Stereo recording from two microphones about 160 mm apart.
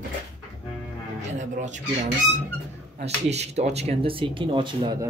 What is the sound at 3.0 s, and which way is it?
A man's voice, 40° right (ahead or behind).